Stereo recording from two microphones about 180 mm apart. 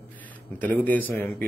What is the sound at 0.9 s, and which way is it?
Speech, 10° left (ahead or behind).